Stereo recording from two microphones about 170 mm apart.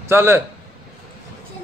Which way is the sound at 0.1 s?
15° right (ahead or behind).